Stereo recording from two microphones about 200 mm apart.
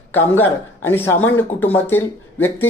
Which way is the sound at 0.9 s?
10° left (ahead or behind).